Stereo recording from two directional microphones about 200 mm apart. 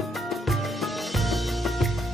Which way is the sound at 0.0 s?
Centre (ahead or behind).